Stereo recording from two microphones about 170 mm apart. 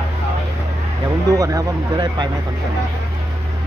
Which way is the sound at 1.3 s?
20° right (ahead or behind).